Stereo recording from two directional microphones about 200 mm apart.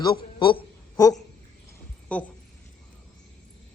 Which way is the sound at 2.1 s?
5° left (ahead or behind).